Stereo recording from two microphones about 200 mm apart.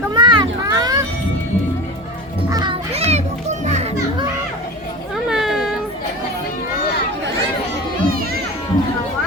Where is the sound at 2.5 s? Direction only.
25° right (ahead or behind).